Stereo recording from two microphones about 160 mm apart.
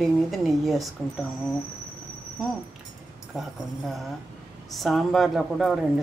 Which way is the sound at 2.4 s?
Centre (ahead or behind).